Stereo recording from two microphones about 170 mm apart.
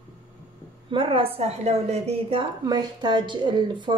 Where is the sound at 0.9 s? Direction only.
30° right (ahead or behind).